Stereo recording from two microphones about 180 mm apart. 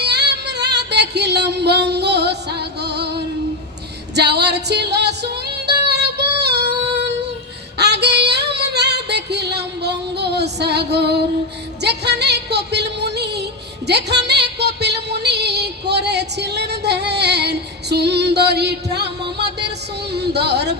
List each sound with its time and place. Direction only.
0.0 s music: 70° right (ahead or behind)
7.8 s female singing: 70° right (ahead or behind)
11.8 s music: 70° right (ahead or behind)
20.1 s speech: 65° right (ahead or behind)